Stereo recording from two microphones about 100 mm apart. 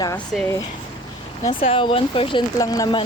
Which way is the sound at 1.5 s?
65° left (ahead or behind).